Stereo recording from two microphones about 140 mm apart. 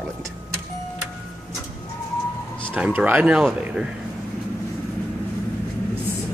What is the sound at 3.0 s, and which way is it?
Speech, 10° right (ahead or behind).